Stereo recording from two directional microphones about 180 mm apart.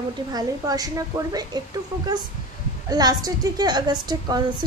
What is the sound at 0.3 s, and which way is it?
A woman's voice, 20° right (ahead or behind).